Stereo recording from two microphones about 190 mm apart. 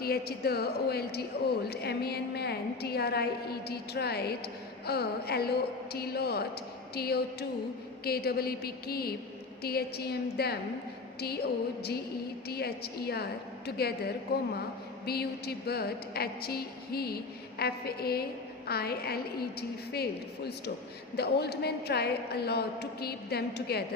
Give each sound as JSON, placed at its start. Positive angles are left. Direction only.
{"t": 0.0, "sound": "speech", "side_deg": 55}
{"t": 12.5, "sound": "speech", "side_deg": 55}
{"t": 21.2, "sound": "speech", "side_deg": 60}